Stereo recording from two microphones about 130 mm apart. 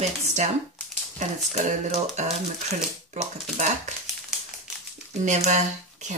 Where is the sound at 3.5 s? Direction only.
65° right (ahead or behind).